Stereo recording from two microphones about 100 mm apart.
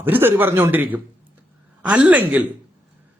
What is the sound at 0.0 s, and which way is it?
A man's voice, 20° right (ahead or behind).